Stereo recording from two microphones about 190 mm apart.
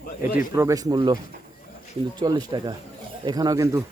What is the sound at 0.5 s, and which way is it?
Speech, 15° right (ahead or behind).